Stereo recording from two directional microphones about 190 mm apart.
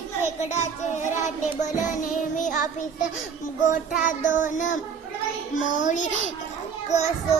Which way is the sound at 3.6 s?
40° left (ahead or behind).